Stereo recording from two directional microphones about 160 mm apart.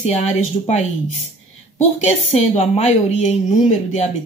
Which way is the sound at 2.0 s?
40° left (ahead or behind).